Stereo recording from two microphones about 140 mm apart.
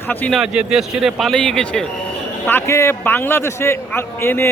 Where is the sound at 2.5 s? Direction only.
20° left (ahead or behind).